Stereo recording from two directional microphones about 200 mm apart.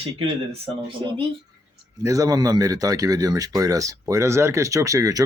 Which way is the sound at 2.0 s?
15° right (ahead or behind).